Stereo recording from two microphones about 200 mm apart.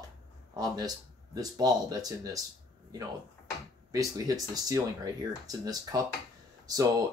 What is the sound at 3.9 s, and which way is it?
Speech, 20° right (ahead or behind).